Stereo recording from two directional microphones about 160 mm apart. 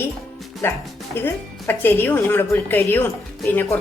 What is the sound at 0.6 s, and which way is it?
Speech, 15° left (ahead or behind).